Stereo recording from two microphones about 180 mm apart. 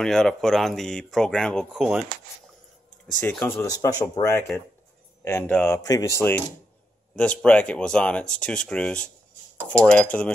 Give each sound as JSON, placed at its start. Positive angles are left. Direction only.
{"t": 0.0, "sound": "speech", "side_deg": 0}
{"t": 3.2, "sound": "speech", "side_deg": 10}